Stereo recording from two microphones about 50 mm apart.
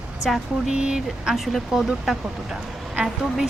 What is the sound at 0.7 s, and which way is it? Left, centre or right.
Speech, centre.